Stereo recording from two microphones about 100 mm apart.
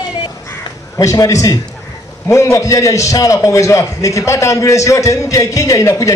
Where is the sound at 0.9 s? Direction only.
35° left (ahead or behind).